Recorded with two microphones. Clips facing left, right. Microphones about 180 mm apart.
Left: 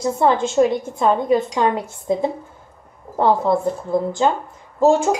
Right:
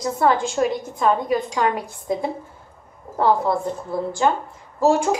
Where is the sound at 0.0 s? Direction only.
25° left (ahead or behind).